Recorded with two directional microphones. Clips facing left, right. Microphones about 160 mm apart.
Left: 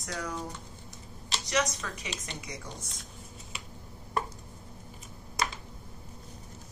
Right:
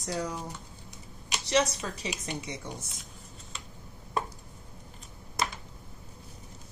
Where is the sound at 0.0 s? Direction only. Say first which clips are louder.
Right 4 dB; 30° right (ahead or behind).